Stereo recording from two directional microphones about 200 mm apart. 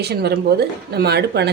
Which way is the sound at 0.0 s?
55° right (ahead or behind).